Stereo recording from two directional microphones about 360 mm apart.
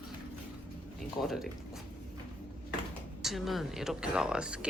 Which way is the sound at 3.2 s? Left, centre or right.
Centre.